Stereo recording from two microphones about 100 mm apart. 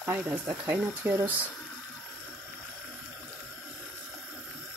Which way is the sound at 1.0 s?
20° right (ahead or behind).